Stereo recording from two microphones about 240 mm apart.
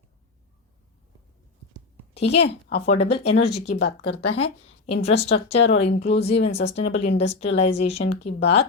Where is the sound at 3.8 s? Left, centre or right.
Left.